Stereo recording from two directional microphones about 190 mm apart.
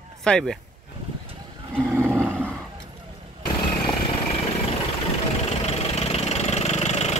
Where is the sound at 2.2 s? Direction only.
10° right (ahead or behind).